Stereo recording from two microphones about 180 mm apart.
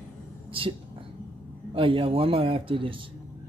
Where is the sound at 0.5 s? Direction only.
30° right (ahead or behind).